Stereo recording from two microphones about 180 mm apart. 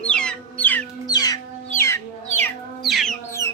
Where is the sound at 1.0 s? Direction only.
20° left (ahead or behind).